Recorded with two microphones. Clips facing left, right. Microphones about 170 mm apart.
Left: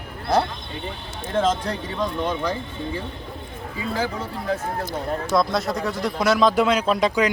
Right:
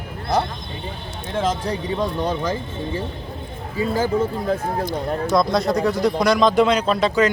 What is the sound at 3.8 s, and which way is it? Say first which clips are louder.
Speech: right 7 dB; 45° right (ahead or behind).